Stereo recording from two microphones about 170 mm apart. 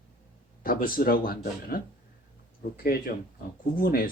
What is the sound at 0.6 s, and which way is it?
Speech, 55° left (ahead or behind).